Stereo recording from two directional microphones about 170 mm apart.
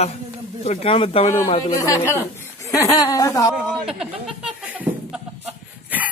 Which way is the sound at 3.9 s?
5° right (ahead or behind).